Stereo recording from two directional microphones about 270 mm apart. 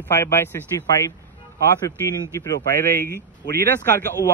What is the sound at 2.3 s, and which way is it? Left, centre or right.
Speech, centre.